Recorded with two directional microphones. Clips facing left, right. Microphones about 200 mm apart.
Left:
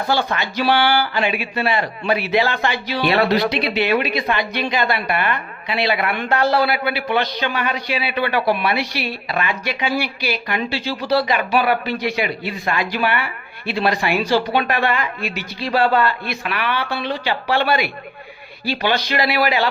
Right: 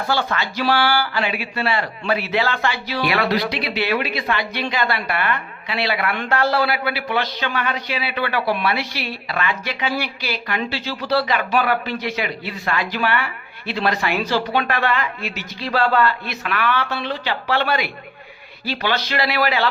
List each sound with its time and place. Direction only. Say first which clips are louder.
0.1 s speech: left 1 dB; 15° left (ahead or behind)